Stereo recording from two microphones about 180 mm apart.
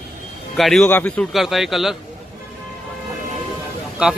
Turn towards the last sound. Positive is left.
turn(degrees=-5)  # may be behind; listen again after turning